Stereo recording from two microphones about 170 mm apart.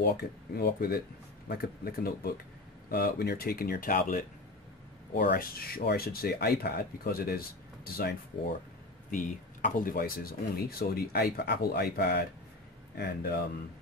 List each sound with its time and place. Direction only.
0.0 s speech: 65° left (ahead or behind)
5.1 s speech: 70° left (ahead or behind)
9.1 s speech: 50° left (ahead or behind); by 13.3 s 70° left (ahead or behind)